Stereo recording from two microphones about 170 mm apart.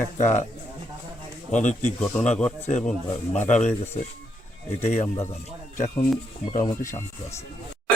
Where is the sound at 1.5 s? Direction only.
45° left (ahead or behind).